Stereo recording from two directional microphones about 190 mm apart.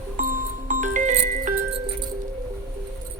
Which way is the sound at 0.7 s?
40° right (ahead or behind).